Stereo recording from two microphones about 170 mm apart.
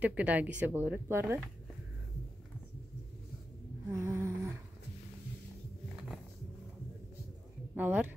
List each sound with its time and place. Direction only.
0.0 s a woman's voice: 10° right (ahead or behind)
3.9 s a sound: 15° right (ahead or behind)
7.7 s speech: 10° right (ahead or behind)